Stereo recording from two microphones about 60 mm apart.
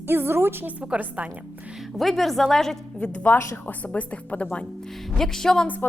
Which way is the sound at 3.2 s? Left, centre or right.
Left.